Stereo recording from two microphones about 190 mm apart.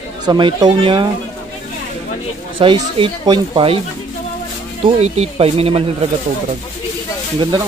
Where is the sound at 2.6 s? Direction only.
25° right (ahead or behind).